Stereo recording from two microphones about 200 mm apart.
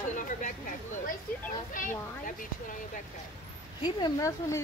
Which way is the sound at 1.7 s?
40° left (ahead or behind).